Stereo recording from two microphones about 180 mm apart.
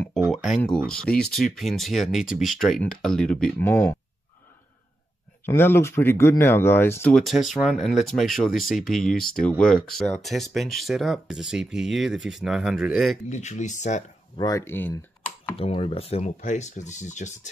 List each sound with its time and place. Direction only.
0.3 s a sound: 5° right (ahead or behind)
0.8 s speech: 5° left (ahead or behind)
5.4 s speech: 10° left (ahead or behind)
13.3 s speech: 40° left (ahead or behind)
14.4 s speech: 15° left (ahead or behind)
15.5 s speech: 30° left (ahead or behind)